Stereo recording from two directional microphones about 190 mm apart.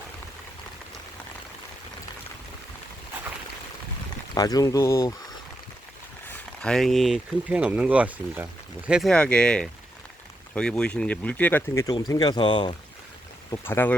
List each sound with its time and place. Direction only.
4.4 s speech: 20° left (ahead or behind)
6.2 s speech: 5° left (ahead or behind); by 12.7 s 25° left (ahead or behind)
13.7 s speech: 10° left (ahead or behind)